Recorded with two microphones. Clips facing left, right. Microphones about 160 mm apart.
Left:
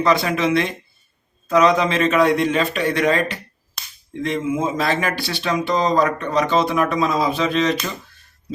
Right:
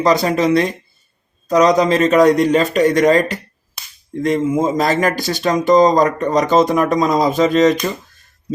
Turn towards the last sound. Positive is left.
turn(degrees=-45)  # may be behind; listen again after turning